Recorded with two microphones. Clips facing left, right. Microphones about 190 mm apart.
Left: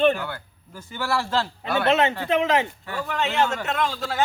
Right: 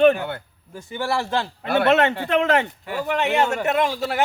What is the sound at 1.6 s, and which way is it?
Speech, 55° right (ahead or behind).